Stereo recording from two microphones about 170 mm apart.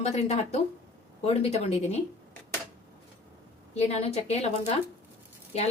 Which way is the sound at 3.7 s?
40° left (ahead or behind).